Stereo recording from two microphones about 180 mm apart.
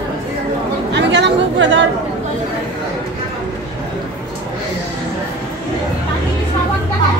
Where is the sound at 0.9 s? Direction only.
75° right (ahead or behind).